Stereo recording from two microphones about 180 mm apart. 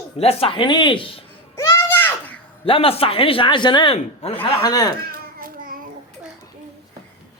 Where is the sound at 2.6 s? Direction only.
30° left (ahead or behind).